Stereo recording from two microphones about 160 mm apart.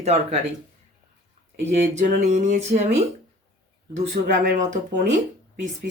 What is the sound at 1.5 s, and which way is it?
Speech, 45° right (ahead or behind).